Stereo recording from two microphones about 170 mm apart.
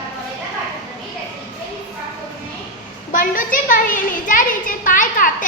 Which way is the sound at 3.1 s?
55° left (ahead or behind).